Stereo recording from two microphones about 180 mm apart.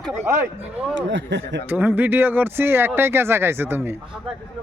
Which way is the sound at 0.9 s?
85° right.